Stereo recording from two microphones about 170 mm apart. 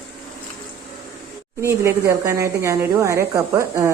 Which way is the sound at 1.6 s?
15° right (ahead or behind).